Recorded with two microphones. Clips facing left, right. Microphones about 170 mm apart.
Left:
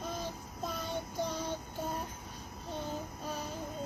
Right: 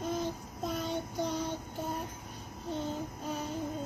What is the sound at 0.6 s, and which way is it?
Child singing, 55° right (ahead or behind).